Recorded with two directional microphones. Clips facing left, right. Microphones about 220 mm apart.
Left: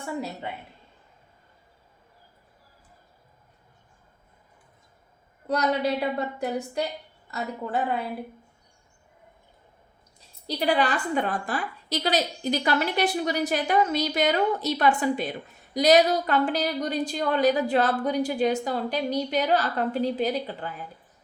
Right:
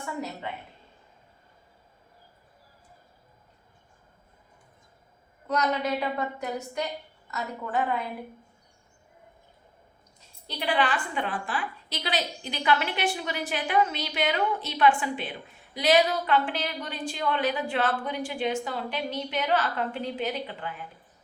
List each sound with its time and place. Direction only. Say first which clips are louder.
5.5 s a woman's voice: left 3 dB; 35° left (ahead or behind)
10.4 s a woman's voice: left 3 dB; 40° left (ahead or behind)